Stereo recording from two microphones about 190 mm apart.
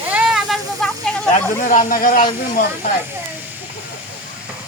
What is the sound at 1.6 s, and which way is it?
Speech, 45° left (ahead or behind).